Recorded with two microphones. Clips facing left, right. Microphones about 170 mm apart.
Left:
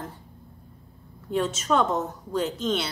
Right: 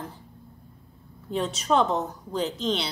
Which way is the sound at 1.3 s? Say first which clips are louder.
Left 1 dB; centre (ahead or behind).